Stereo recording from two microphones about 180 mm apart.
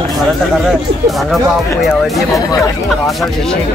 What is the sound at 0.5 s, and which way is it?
Speech, centre (ahead or behind).